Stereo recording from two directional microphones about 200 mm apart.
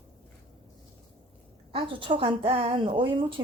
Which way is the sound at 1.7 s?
25° right (ahead or behind).